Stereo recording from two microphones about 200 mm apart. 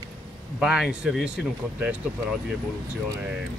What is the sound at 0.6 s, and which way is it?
Speech, 5° right (ahead or behind).